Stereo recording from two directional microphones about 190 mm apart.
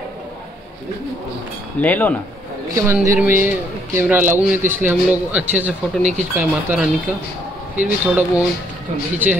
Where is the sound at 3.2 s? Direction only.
10° right (ahead or behind).